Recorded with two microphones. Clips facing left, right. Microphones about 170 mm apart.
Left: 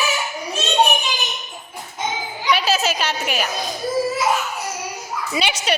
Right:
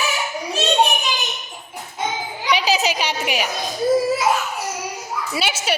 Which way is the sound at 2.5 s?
15° right (ahead or behind).